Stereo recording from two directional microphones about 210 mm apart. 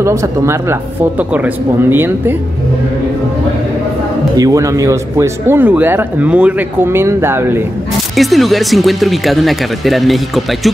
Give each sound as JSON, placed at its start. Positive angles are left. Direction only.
{"t": 0.0, "sound": "speech", "side_deg": -15}
{"t": 4.4, "sound": "speech", "side_deg": -15}
{"t": 8.2, "sound": "speech", "side_deg": 0}